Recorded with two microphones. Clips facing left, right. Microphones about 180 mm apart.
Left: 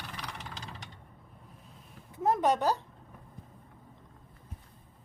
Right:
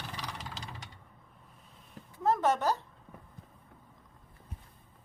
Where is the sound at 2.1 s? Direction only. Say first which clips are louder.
Left 1 dB; 20° left (ahead or behind).